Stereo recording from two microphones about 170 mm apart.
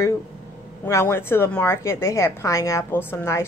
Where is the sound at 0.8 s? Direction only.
15° left (ahead or behind).